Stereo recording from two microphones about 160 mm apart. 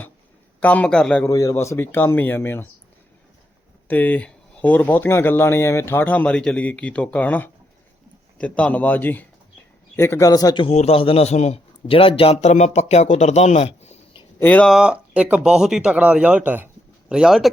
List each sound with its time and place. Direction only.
0.6 s speech: 10° left (ahead or behind)
1.3 s speech: 20° left (ahead or behind)
3.8 s a man's voice: 10° left (ahead or behind); by 14.2 s 40° left (ahead or behind)
14.3 s speech: 10° left (ahead or behind)
14.7 s speech: 5° right (ahead or behind)